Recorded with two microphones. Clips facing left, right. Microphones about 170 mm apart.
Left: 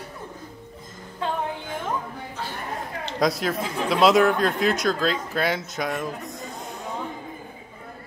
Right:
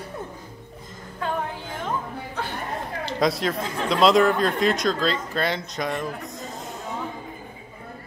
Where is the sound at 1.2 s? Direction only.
25° left (ahead or behind).